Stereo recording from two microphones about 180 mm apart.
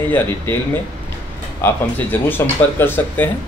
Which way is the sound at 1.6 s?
10° left (ahead or behind).